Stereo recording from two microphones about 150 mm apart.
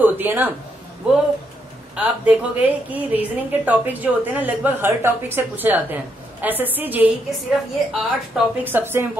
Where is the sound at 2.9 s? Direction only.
10° right (ahead or behind).